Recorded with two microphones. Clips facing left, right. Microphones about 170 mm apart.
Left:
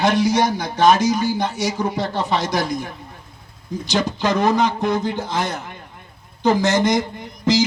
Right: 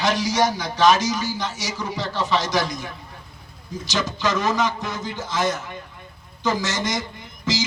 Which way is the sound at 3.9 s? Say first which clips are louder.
Left 4 dB; 60° left (ahead or behind).